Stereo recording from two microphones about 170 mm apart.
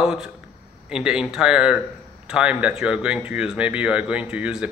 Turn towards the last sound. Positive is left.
turn(degrees=-5)  # may be behind; listen again after turning